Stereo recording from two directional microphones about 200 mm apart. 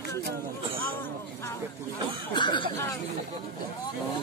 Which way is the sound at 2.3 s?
25° left (ahead or behind).